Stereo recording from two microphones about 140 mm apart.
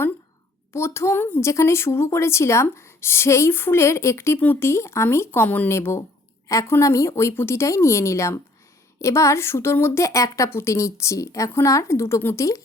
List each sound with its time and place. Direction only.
0.7 s speech: 20° left (ahead or behind)